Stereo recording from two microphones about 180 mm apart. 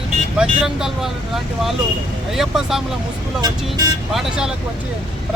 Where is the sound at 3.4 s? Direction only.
20° right (ahead or behind).